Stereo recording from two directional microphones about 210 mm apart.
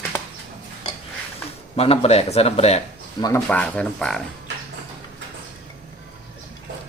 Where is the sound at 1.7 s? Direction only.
25° left (ahead or behind).